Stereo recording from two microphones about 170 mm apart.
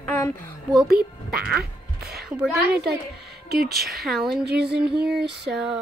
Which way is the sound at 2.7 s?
75° right (ahead or behind).